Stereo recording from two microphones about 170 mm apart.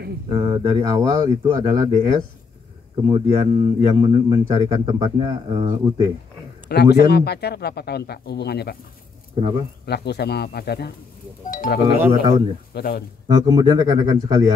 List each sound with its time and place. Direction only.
0.3 s a man's voice: 30° right (ahead or behind)
6.7 s speech: 75° left (ahead or behind)
9.8 s speech: 75° left (ahead or behind)
11.5 s music: 55° left (ahead or behind)
12.0 s a man's voice: 20° right (ahead or behind)
12.7 s speech: 65° left (ahead or behind)
13.4 s a man's voice: 25° right (ahead or behind)